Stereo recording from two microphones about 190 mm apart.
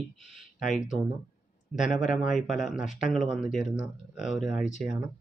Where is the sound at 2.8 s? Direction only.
40° left (ahead or behind).